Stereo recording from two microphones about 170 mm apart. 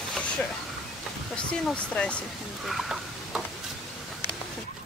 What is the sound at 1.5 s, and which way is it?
Speech, 5° left (ahead or behind).